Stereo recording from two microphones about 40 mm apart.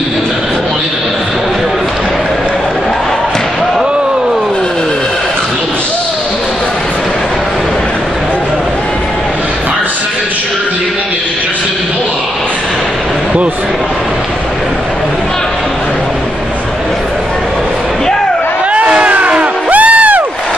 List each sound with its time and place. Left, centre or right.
18.7 s music: right